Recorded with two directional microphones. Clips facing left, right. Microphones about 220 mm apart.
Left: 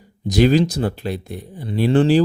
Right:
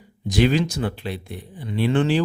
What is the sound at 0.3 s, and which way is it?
Speech, 40° left (ahead or behind).